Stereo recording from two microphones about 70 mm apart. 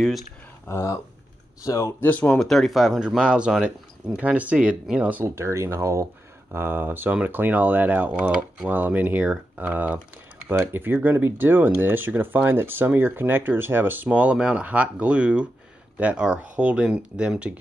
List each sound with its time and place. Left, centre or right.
0.7 s speech: left
2.0 s speech: left
2.4 s speech: centre
3.2 s speech: centre
5.2 s speech: right
14.0 s speech: centre